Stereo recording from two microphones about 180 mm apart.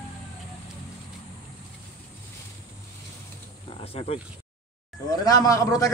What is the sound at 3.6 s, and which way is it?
Wild animals, 35° left (ahead or behind).